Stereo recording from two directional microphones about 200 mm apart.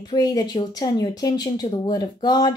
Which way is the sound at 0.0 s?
20° left (ahead or behind).